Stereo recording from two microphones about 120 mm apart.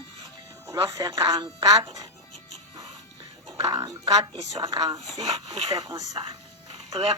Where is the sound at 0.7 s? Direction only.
30° right (ahead or behind).